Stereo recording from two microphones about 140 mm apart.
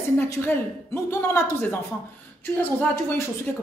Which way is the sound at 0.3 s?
20° left (ahead or behind).